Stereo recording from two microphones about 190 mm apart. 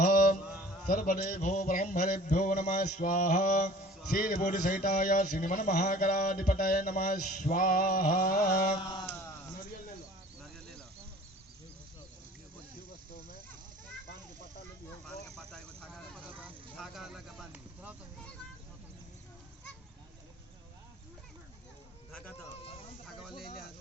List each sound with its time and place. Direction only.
0.9 s a man's voice: 45° left (ahead or behind)
8.7 s speech: 25° left (ahead or behind)
15.0 s vehicle: 5° left (ahead or behind)
16.2 s vehicle: 10° right (ahead or behind)
22.1 s a sound: 5° left (ahead or behind)